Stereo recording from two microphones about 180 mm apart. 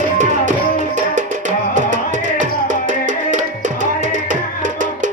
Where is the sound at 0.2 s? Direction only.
45° right (ahead or behind).